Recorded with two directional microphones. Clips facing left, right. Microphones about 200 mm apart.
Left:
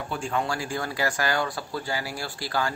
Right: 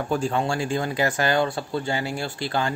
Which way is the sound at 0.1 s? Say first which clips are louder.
Right 6 dB; 35° right (ahead or behind).